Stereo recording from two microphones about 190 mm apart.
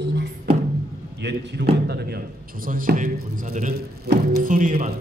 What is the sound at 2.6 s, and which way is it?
Speech, 45° right (ahead or behind).